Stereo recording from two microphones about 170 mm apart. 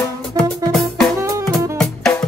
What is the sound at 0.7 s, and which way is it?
Music, centre (ahead or behind).